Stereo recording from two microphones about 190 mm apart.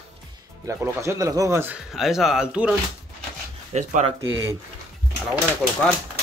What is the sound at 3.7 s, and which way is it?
Speech, 35° right (ahead or behind).